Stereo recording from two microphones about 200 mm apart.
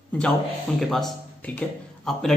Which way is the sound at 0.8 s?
Centre (ahead or behind).